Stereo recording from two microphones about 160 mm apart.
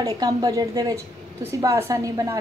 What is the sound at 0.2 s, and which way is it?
A woman's voice, 25° right (ahead or behind).